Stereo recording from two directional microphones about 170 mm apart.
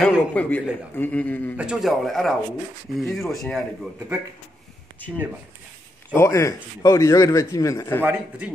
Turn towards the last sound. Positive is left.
turn(degrees=20)  # may be behind; listen again after turning